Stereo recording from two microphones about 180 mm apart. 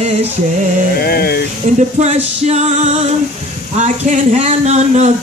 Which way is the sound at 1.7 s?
40° right (ahead or behind).